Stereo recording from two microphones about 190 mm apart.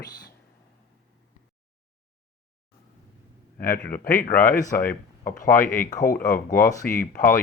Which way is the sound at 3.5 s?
45° left (ahead or behind).